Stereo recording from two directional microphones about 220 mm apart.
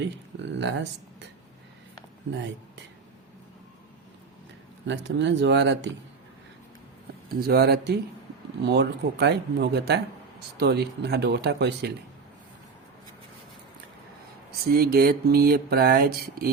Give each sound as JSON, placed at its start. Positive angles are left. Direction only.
{"t": 0.0, "sound": "speech", "side_deg": -55}
{"t": 2.3, "sound": "speech", "side_deg": -55}
{"t": 4.9, "sound": "speech", "side_deg": -55}
{"t": 7.4, "sound": "speech", "side_deg": -45}
{"t": 14.7, "sound": "speech", "side_deg": -45}